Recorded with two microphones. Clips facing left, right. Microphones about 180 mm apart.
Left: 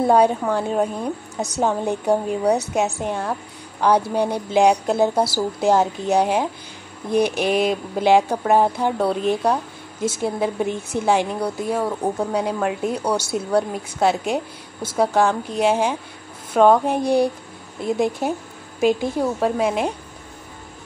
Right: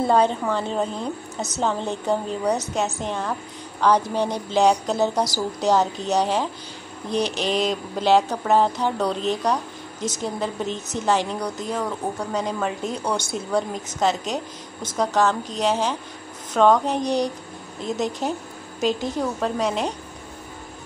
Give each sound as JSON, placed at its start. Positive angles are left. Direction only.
{"t": 0.0, "sound": "speech", "side_deg": 10}
{"t": 11.8, "sound": "speech", "side_deg": 20}
{"t": 12.3, "sound": "speech", "side_deg": 10}
{"t": 15.6, "sound": "speech", "side_deg": 10}
{"t": 19.4, "sound": "speech", "side_deg": 10}